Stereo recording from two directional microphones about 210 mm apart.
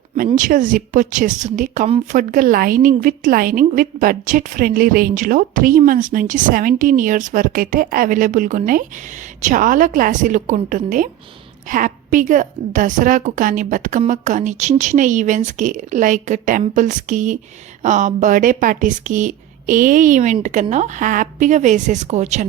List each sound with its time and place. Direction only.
0.3 s speech: 40° right (ahead or behind)